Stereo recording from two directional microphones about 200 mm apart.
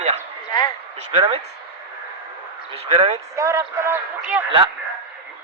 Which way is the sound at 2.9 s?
30° right (ahead or behind).